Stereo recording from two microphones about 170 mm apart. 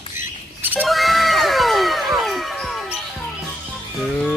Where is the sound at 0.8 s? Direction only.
Centre (ahead or behind).